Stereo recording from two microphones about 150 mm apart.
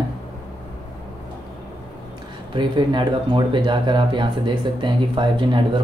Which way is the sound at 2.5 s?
30° right (ahead or behind).